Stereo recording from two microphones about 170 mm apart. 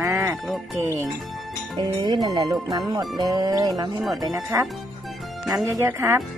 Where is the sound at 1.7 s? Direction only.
25° right (ahead or behind).